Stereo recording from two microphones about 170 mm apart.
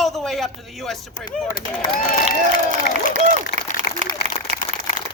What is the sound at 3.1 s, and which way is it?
Applause, 45° right (ahead or behind).